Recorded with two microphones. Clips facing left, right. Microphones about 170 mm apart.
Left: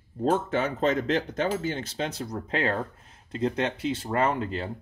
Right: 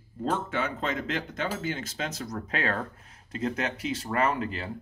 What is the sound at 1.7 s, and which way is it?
Speech, 30° left (ahead or behind).